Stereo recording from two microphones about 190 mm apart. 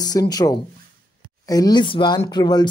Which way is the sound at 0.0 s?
20° left (ahead or behind).